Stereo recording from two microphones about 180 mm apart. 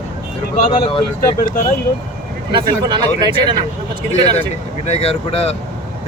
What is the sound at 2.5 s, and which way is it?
Speech, 25° right (ahead or behind).